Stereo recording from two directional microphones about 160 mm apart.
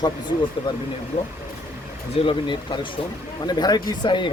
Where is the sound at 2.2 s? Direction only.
30° left (ahead or behind).